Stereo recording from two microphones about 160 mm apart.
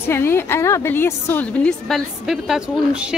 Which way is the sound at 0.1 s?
15° left (ahead or behind).